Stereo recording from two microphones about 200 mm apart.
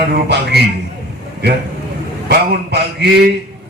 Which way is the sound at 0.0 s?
55° right (ahead or behind).